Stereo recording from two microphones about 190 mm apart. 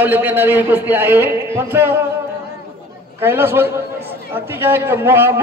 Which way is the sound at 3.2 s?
10° right (ahead or behind).